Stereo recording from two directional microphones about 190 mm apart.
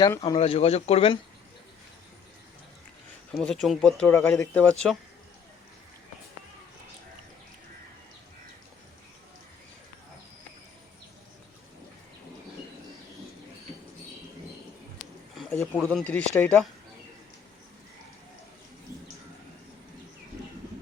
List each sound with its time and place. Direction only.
0.1 s speech: 20° left (ahead or behind)
0.3 s speech: 30° left (ahead or behind)
3.3 s speech: 5° left (ahead or behind)
15.7 s speech: 5° left (ahead or behind)